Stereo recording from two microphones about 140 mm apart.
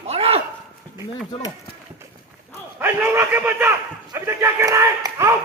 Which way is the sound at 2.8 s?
15° right (ahead or behind).